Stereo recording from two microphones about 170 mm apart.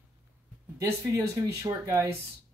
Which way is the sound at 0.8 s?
20° right (ahead or behind).